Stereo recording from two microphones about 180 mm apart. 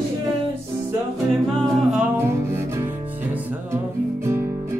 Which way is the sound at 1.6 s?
Centre (ahead or behind).